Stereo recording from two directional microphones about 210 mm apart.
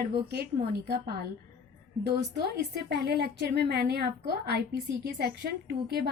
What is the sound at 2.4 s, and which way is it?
A woman's voice, 50° right (ahead or behind).